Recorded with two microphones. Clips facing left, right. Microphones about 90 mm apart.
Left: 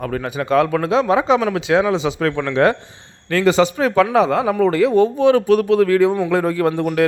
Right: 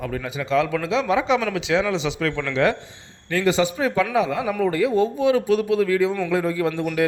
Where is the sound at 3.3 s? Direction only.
70° left (ahead or behind).